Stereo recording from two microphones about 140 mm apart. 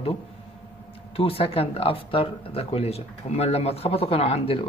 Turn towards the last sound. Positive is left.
turn(degrees=45)  # may be behind; listen again after turning